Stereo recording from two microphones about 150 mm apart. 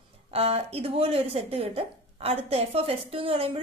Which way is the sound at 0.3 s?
45° right (ahead or behind).